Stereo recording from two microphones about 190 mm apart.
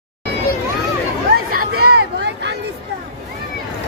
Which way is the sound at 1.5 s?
60° right (ahead or behind).